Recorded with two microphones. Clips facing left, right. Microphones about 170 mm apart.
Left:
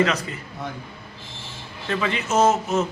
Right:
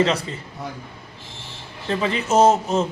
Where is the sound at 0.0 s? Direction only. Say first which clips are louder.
Right 2 dB; 30° right (ahead or behind).